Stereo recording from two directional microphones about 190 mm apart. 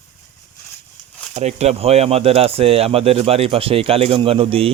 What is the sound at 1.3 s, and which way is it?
Speech, 35° right (ahead or behind).